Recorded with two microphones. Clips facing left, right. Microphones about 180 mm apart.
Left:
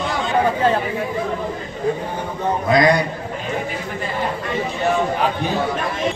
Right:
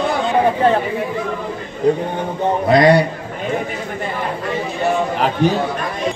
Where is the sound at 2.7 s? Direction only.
30° right (ahead or behind).